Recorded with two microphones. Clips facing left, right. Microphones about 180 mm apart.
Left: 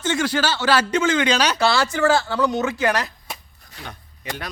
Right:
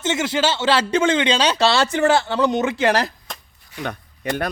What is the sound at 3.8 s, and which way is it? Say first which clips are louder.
Speech: right 10 dB; 60° right (ahead or behind).